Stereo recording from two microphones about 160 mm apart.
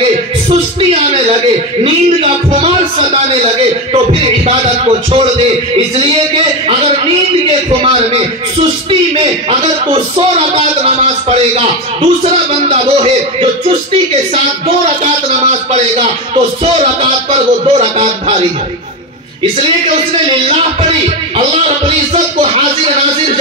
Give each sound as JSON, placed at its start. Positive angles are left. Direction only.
{"t": 0.5, "sound": "music", "side_deg": -40}
{"t": 1.8, "sound": "a man's voice", "side_deg": -35}
{"t": 7.8, "sound": "a man's voice", "side_deg": -40}
{"t": 15.2, "sound": "a man's voice", "side_deg": -45}
{"t": 21.4, "sound": "a man's voice", "side_deg": -40}